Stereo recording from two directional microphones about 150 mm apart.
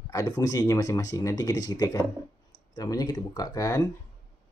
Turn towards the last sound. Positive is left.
turn(degrees=25)  # may be behind; listen again after turning